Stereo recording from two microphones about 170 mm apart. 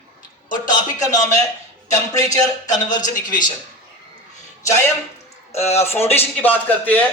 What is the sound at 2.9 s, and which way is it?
Speech, 50° left (ahead or behind).